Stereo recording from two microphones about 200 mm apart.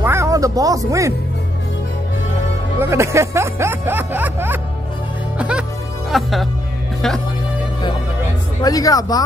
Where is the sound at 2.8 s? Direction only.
15° right (ahead or behind).